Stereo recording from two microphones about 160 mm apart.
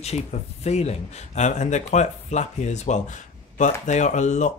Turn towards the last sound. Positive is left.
turn(degrees=45)  # may be behind; listen again after turning